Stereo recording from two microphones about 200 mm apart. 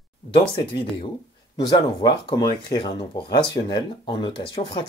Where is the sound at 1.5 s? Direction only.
20° left (ahead or behind).